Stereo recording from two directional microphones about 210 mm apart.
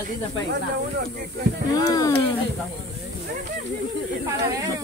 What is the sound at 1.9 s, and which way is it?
Speech, 15° left (ahead or behind).